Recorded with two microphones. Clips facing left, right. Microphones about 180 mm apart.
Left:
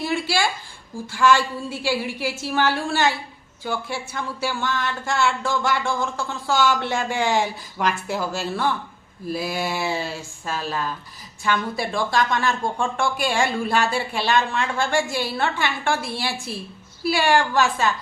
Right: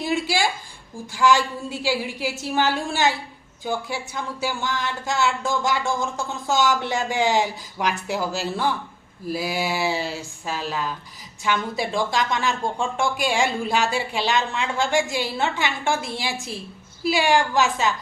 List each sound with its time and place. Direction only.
0.0 s a woman's voice: 20° right (ahead or behind)